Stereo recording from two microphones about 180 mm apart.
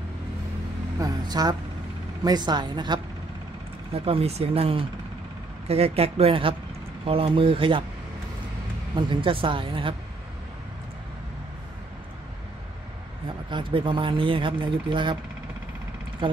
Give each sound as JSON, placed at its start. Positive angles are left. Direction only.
{"t": 0.9, "sound": "speech", "side_deg": -20}
{"t": 8.9, "sound": "speech", "side_deg": -25}
{"t": 13.5, "sound": "speech", "side_deg": -25}
{"t": 16.2, "sound": "speech", "side_deg": -30}